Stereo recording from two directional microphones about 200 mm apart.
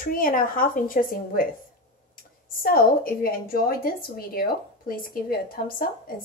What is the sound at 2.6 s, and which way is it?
A woman's voice, 45° left (ahead or behind).